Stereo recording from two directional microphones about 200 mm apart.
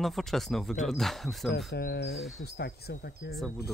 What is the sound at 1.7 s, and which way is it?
Cricket, 55° left (ahead or behind).